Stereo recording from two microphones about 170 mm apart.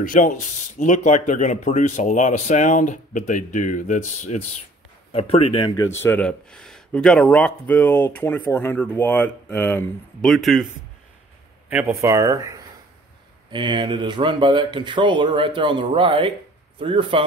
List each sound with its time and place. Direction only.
0.0 s speech: 50° left (ahead or behind)
5.1 s speech: 35° left (ahead or behind)
5.8 s speech: 15° left (ahead or behind)
10.2 s speech: centre (ahead or behind)
12.0 s a man's voice: 20° right (ahead or behind)